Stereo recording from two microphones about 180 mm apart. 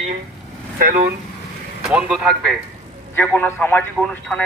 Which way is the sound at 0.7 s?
50° right (ahead or behind).